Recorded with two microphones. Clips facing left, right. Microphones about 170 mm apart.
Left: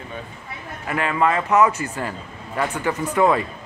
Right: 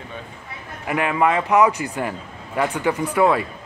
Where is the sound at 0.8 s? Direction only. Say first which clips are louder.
Right 1 dB; 15° right (ahead or behind).